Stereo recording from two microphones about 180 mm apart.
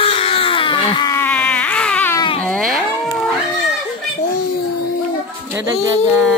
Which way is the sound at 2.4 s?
5° left (ahead or behind).